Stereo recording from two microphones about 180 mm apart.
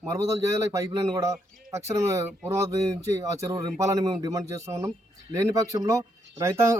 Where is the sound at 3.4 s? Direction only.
20° right (ahead or behind).